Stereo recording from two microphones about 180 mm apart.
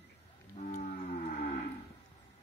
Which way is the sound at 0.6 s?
40° left (ahead or behind).